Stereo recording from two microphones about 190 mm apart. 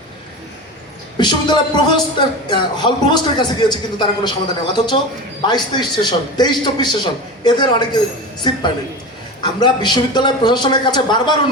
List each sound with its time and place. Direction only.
1.2 s speech: 25° left (ahead or behind)